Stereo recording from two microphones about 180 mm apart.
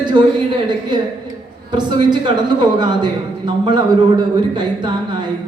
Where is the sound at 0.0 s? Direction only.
25° right (ahead or behind).